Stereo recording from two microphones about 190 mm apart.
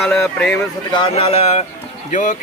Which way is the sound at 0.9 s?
25° left (ahead or behind).